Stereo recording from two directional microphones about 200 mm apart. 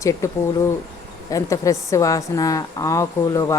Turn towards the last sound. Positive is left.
turn(degrees=15)  # may be behind; listen again after turning